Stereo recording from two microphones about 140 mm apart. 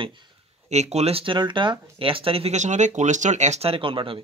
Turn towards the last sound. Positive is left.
turn(degrees=-40)  # may be behind; listen again after turning